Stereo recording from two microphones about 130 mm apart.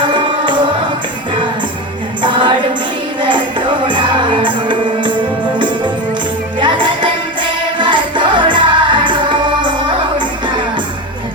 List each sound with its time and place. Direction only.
0.0 s music: 40° right (ahead or behind)
2.2 s music: 40° right (ahead or behind)